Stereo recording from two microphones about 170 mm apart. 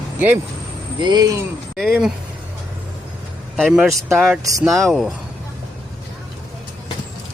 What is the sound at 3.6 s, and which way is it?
Speech, centre (ahead or behind).